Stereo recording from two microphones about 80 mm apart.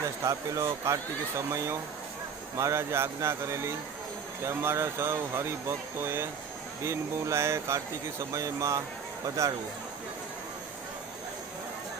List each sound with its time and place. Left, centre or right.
0.0 s speech: right